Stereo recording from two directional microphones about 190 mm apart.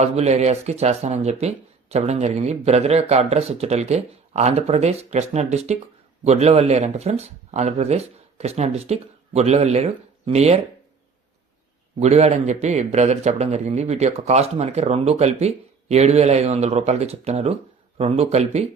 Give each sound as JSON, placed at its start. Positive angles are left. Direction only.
{"t": 0.0, "sound": "a man's voice", "side_deg": -35}
{"t": 11.9, "sound": "a man's voice", "side_deg": -35}